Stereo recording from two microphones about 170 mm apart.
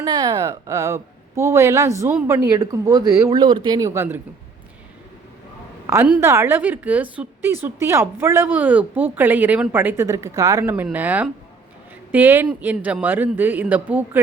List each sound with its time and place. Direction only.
0.0 s a woman's voice: 25° right (ahead or behind)
5.9 s a woman's voice: 15° right (ahead or behind)